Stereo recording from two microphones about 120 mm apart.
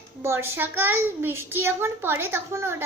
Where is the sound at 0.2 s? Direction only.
20° right (ahead or behind).